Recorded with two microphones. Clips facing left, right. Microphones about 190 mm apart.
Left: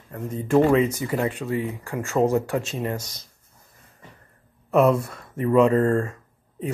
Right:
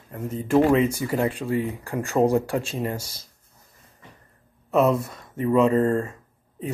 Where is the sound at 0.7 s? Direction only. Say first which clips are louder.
Left 1 dB; 30° right (ahead or behind).